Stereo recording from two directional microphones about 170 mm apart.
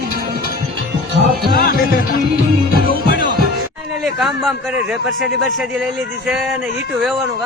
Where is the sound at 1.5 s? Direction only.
65° left (ahead or behind).